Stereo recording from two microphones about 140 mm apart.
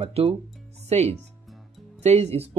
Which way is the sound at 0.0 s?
45° right (ahead or behind).